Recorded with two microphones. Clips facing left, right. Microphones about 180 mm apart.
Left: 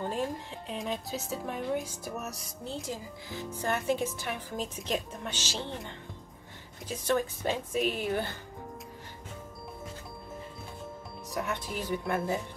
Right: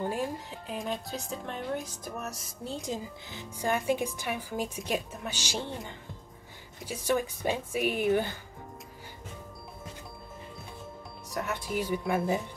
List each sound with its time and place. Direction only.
0.0 s speech: 10° right (ahead or behind)
2.6 s a woman's voice: 15° right (ahead or behind)
6.9 s a woman's voice: 10° right (ahead or behind)
11.2 s speech: centre (ahead or behind)